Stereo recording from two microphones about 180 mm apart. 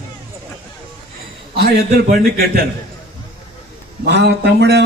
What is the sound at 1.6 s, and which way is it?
A man's voice, 60° right (ahead or behind).